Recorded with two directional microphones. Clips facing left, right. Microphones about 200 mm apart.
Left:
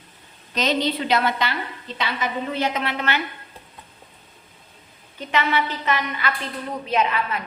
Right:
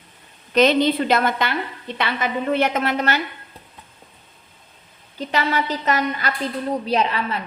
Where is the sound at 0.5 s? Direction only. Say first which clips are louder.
Right 7 dB; 55° right (ahead or behind).